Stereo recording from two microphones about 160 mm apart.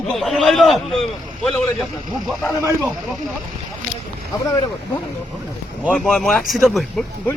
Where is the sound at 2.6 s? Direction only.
15° right (ahead or behind).